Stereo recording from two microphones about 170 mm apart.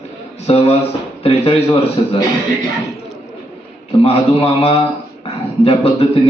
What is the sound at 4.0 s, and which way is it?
A man's voice, 35° left (ahead or behind).